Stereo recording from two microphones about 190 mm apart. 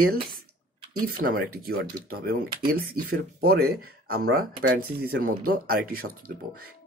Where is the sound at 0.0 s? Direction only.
50° right (ahead or behind).